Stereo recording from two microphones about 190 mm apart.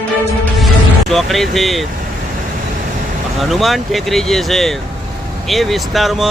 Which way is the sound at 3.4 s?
Centre (ahead or behind).